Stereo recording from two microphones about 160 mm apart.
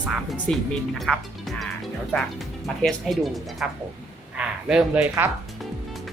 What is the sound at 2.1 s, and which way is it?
Speech, 10° left (ahead or behind).